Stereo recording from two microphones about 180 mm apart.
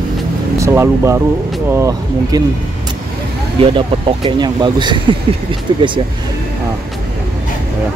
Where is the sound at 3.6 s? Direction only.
30° right (ahead or behind).